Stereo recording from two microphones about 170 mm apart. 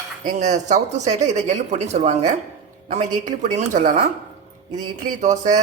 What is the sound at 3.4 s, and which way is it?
Speech, 45° right (ahead or behind).